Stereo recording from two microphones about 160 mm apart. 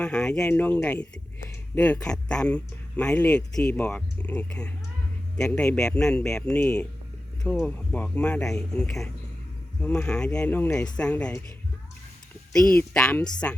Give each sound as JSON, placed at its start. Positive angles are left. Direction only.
{"t": 0.0, "sound": "speech", "side_deg": 5}
{"t": 12.7, "sound": "speech", "side_deg": 5}